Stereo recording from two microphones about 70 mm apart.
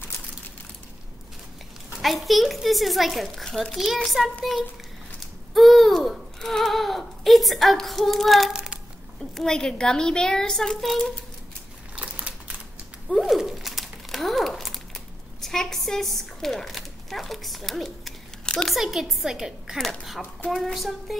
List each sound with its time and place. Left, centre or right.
2.0 s a child's voice: centre
5.5 s a sound: centre
9.2 s a woman's voice: centre
11.9 s a sound: centre
13.1 s crumpling: centre
15.4 s speech: centre
18.8 s a child's voice: centre